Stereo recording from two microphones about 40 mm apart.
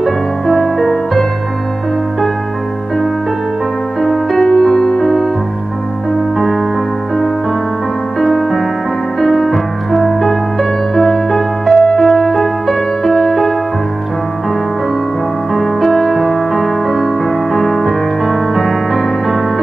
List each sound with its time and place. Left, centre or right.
0.0 s music: centre
4.0 s music: centre
6.3 s music: centre
8.2 s music: centre
15.5 s music: centre